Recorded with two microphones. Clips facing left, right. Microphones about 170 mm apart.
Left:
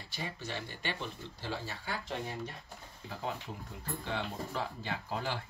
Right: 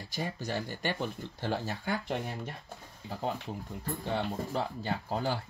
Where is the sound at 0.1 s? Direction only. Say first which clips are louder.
Right 6 dB; 45° right (ahead or behind).